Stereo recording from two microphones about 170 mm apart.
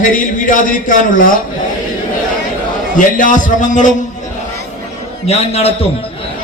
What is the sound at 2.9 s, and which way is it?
Speech, 50° left (ahead or behind).